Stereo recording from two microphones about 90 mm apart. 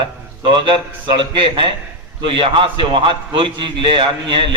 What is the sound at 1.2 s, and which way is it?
A man's voice, 65° right (ahead or behind).